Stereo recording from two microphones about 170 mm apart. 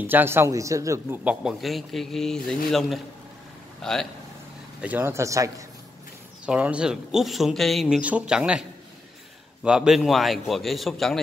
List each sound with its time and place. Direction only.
0.0 s speech: 10° right (ahead or behind)
1.2 s speech: 5° right (ahead or behind)
4.8 s speech: 10° right (ahead or behind)
6.4 s speech: 5° right (ahead or behind)